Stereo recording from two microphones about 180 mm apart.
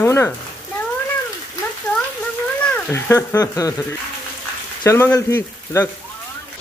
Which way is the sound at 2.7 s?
15° left (ahead or behind).